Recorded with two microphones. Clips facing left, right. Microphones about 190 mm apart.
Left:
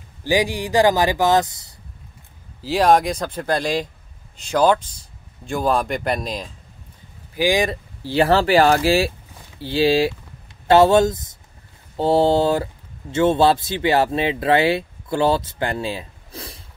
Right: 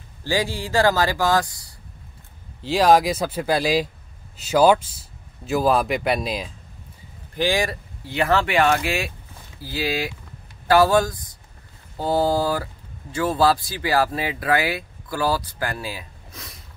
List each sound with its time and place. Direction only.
0.2 s speech: 15° left (ahead or behind)
2.6 s a man's voice: centre (ahead or behind)
7.3 s speech: 15° left (ahead or behind); by 16.6 s 30° left (ahead or behind)